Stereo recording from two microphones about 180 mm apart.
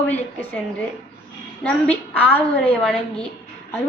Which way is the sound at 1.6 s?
10° left (ahead or behind).